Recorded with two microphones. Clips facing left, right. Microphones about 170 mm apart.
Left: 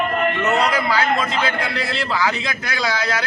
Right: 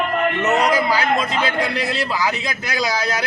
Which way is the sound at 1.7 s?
15° right (ahead or behind).